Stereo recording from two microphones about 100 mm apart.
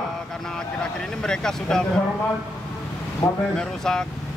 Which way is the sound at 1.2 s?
5° left (ahead or behind).